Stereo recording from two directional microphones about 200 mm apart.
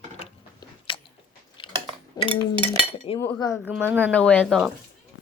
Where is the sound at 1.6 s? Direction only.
25° left (ahead or behind).